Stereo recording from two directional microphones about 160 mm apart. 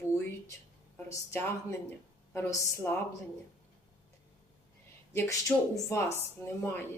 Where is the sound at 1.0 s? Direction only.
20° left (ahead or behind).